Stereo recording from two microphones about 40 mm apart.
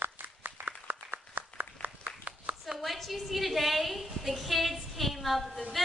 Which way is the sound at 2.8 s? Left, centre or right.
Centre.